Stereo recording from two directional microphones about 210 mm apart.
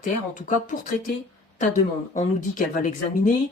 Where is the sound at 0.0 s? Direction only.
40° left (ahead or behind).